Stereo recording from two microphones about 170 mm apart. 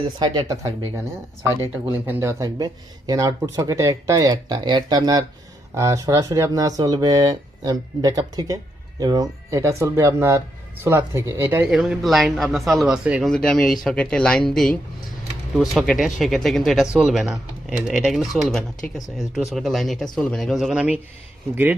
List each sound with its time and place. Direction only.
0.2 s speech: 20° right (ahead or behind)
1.9 s speech: 10° right (ahead or behind)
11.7 s speech: 5° right (ahead or behind)